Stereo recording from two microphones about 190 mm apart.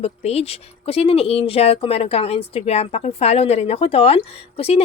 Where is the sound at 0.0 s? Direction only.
35° left (ahead or behind).